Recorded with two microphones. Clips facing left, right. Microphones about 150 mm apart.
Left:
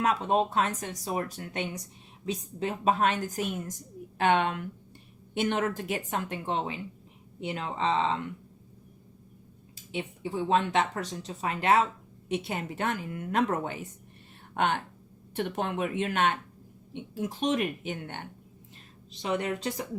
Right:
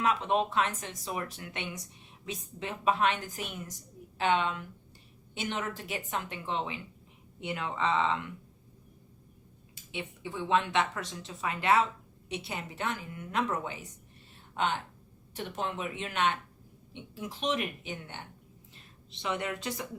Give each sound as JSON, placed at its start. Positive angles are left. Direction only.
{"t": 0.0, "sound": "a woman's voice", "side_deg": 35}
{"t": 7.4, "sound": "speech", "side_deg": 35}
{"t": 9.9, "sound": "a woman's voice", "side_deg": 35}
{"t": 19.2, "sound": "speech", "side_deg": 40}